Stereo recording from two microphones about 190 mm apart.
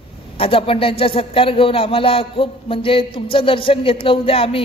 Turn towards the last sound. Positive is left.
turn(degrees=30)  # may be behind; listen again after turning